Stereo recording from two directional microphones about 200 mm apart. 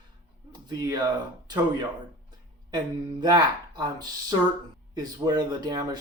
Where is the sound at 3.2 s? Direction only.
20° right (ahead or behind).